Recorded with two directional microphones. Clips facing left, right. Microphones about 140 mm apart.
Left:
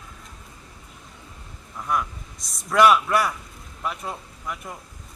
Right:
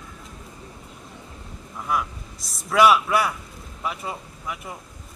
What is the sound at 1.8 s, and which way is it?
Speech, 5° right (ahead or behind).